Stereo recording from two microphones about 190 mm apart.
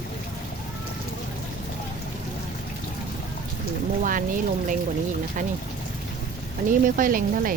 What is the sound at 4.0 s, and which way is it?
Speech, 45° right (ahead or behind).